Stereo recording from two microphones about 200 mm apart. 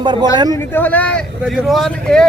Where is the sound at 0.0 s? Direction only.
25° right (ahead or behind).